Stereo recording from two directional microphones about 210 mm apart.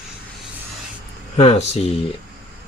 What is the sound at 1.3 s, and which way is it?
Speech, 30° left (ahead or behind).